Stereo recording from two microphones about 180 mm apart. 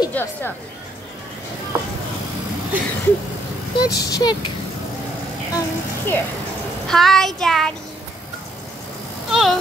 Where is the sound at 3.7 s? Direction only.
20° left (ahead or behind).